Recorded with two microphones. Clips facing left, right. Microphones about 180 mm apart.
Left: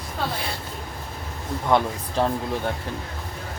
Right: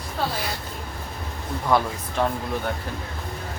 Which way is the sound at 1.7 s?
20° left (ahead or behind).